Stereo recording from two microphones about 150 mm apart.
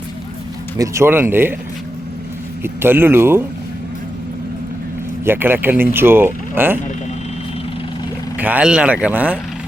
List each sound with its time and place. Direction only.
0.8 s speech: 15° right (ahead or behind)
2.6 s speech: 15° right (ahead or behind)
5.2 s speech: 15° right (ahead or behind)
8.4 s speech: 10° right (ahead or behind)